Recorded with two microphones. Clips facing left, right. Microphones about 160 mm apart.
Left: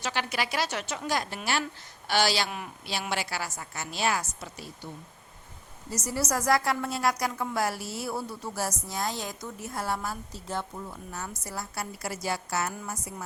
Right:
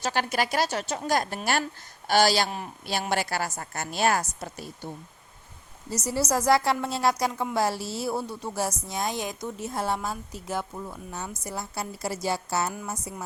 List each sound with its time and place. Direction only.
0.0 s a woman's voice: 45° right (ahead or behind)
5.9 s a woman's voice: 25° right (ahead or behind)